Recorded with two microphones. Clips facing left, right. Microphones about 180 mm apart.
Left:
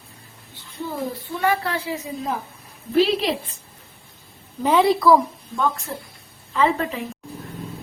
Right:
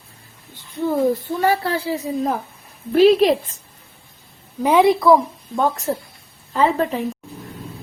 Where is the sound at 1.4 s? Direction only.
35° right (ahead or behind).